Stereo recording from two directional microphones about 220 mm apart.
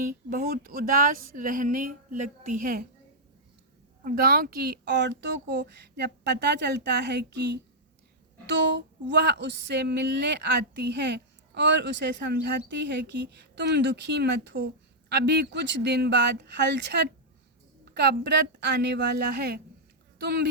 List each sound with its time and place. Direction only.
0.0 s speech: 40° right (ahead or behind)
4.0 s a sound: 45° right (ahead or behind)
20.1 s speech: 45° right (ahead or behind)